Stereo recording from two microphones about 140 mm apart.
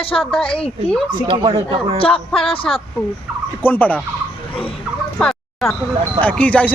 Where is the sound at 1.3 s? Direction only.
35° right (ahead or behind).